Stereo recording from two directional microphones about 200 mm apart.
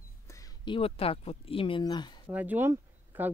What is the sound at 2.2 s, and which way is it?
Speech, 10° right (ahead or behind).